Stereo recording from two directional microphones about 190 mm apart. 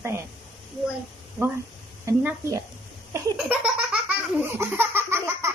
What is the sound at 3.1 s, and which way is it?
Laughter, 5° right (ahead or behind).